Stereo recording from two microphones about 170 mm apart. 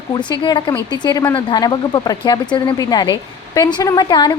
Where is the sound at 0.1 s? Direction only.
25° left (ahead or behind).